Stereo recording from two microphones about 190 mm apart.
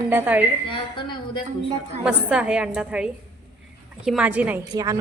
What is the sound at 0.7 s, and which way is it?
Speech, 25° left (ahead or behind).